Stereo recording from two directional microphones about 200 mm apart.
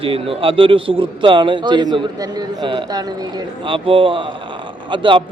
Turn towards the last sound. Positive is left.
turn(degrees=-25)  # may be behind; listen again after turning